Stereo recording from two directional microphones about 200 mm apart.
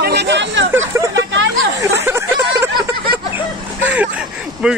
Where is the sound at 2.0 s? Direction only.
15° right (ahead or behind).